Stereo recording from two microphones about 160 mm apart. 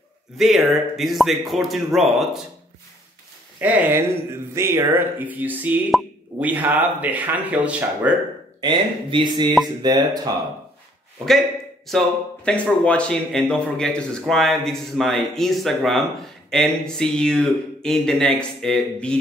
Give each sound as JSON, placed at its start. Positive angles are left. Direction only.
{"t": 0.4, "sound": "speech", "side_deg": 0}
{"t": 3.5, "sound": "speech", "side_deg": -10}
{"t": 5.9, "sound": "speech", "side_deg": 0}
{"t": 6.5, "sound": "speech", "side_deg": -10}
{"t": 8.5, "sound": "speech", "side_deg": -30}
{"t": 11.9, "sound": "speech", "side_deg": 5}